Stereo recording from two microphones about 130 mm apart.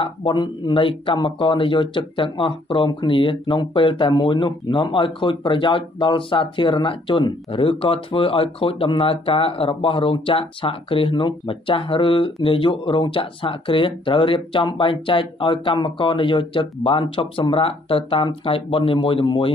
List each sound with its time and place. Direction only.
0.0 s speech: 35° left (ahead or behind)